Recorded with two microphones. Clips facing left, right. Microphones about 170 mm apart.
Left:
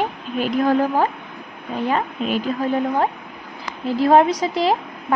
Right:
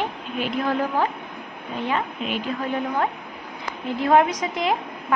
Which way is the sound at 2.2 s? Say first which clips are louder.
Left 5 dB; 40° left (ahead or behind).